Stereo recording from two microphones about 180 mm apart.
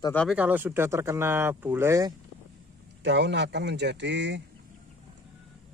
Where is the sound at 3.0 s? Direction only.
80° right.